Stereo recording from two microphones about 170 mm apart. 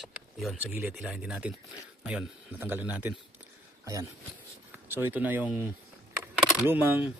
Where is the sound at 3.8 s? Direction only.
20° right (ahead or behind).